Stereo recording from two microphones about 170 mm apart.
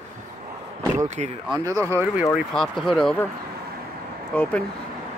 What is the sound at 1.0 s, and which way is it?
Speech, 40° right (ahead or behind).